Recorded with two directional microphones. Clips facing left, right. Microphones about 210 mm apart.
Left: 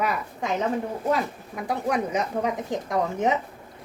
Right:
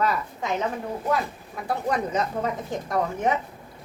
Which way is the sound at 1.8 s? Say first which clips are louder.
Even; 10° left (ahead or behind).